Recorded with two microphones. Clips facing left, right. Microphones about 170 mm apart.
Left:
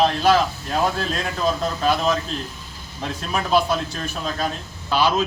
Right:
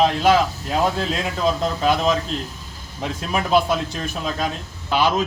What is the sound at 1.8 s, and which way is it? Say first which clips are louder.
A man's voice: right 1 dB; 15° right (ahead or behind).